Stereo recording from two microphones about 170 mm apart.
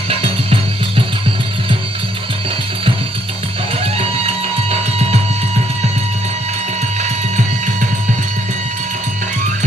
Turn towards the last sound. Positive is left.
turn(degrees=-45)  # may be behind; listen again after turning